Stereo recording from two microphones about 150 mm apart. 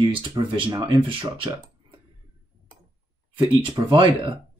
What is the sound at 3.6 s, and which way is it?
Speech, 35° right (ahead or behind).